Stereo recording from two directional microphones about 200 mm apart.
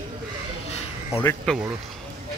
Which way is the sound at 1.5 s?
5° left (ahead or behind).